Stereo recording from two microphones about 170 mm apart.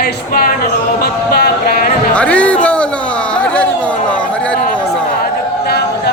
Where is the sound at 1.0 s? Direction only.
65° left (ahead or behind).